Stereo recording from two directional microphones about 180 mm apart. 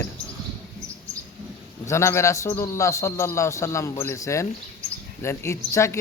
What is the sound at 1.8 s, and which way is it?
A man's voice, 15° left (ahead or behind).